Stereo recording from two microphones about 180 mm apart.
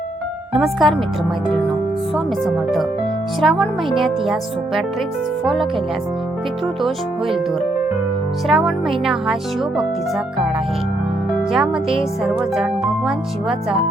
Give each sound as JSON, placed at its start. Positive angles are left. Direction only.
{"t": 0.5, "sound": "speech", "side_deg": 0}
{"t": 2.1, "sound": "speech", "side_deg": 0}
{"t": 8.4, "sound": "speech", "side_deg": 0}
{"t": 11.5, "sound": "speech", "side_deg": -5}